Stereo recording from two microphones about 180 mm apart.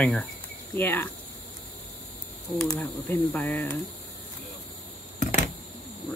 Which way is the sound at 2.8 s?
10° left (ahead or behind).